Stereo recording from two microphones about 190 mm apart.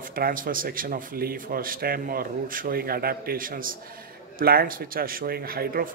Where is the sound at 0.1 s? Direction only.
45° right (ahead or behind).